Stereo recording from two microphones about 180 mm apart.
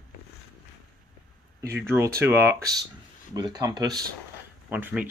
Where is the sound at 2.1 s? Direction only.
15° right (ahead or behind).